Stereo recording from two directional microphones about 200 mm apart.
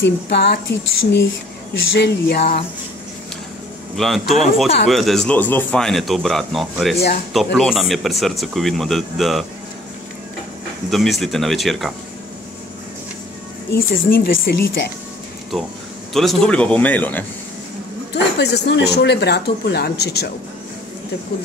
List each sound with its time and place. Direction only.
0.0 s speech: 55° left (ahead or behind)
3.9 s a man's voice: centre (ahead or behind)
10.9 s a man's voice: centre (ahead or behind)
13.7 s speech: 50° left (ahead or behind)
16.1 s a man's voice: centre (ahead or behind)
18.1 s speech: 55° left (ahead or behind)